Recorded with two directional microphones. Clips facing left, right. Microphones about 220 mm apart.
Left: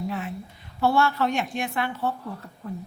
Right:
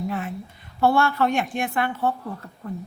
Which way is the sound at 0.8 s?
50° right (ahead or behind).